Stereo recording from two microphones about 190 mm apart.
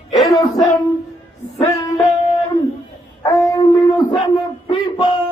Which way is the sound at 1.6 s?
15° left (ahead or behind).